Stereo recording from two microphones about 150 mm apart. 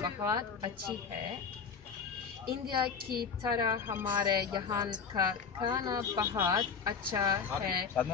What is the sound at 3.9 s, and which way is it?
Speech, 15° right (ahead or behind).